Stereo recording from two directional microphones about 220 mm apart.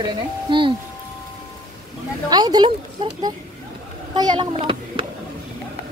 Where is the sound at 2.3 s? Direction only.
20° right (ahead or behind).